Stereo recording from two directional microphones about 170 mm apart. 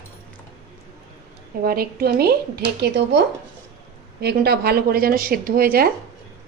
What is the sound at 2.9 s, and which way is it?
Speech, 80° right.